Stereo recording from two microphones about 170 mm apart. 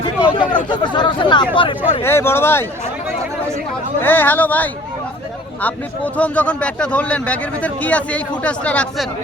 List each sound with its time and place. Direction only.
0.0 s speech: 25° left (ahead or behind)
2.0 s a man's voice: 15° left (ahead or behind)
4.0 s a man's voice: 10° left (ahead or behind)
6.1 s a man's voice: 10° left (ahead or behind)